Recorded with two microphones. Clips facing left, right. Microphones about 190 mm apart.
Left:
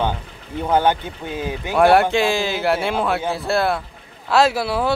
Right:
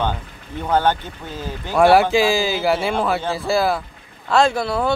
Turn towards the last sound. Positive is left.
turn(degrees=5)  # may be behind; listen again after turning